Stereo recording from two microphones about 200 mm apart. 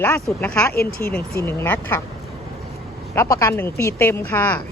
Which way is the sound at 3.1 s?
15° left (ahead or behind).